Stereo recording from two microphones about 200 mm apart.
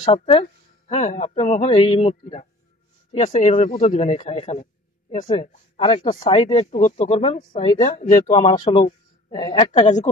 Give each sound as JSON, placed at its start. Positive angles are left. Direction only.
{"t": 0.2, "sound": "speech", "side_deg": 25}